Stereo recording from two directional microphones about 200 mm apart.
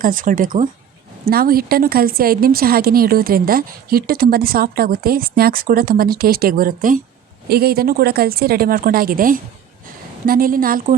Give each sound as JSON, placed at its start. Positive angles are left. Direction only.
{"t": 0.0, "sound": "a woman's voice", "side_deg": -45}